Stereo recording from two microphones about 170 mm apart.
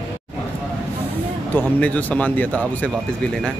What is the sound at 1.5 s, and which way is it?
Speech, 10° left (ahead or behind).